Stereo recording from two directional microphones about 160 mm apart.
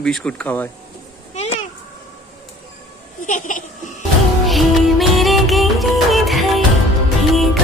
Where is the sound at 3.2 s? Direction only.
50° left (ahead or behind).